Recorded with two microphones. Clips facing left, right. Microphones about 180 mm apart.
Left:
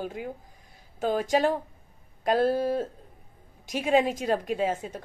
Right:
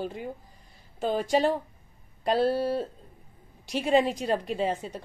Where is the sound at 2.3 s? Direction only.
50° left (ahead or behind).